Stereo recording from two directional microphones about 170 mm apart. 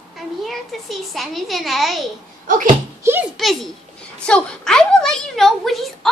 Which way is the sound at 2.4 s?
55° right (ahead or behind).